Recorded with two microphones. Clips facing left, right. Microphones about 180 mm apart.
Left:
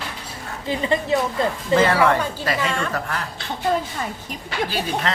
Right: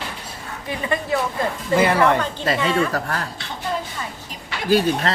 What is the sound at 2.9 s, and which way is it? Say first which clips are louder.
Speech: right 2 dB; 40° right (ahead or behind).